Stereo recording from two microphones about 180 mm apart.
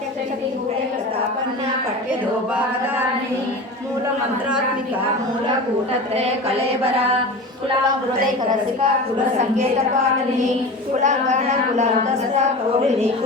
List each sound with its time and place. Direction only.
11.0 s speech: 40° right (ahead or behind)